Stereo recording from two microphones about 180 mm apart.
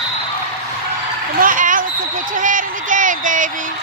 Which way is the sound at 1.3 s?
50° right (ahead or behind).